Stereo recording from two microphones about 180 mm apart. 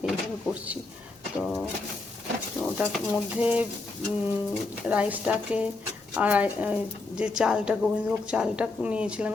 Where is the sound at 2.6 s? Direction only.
5° right (ahead or behind).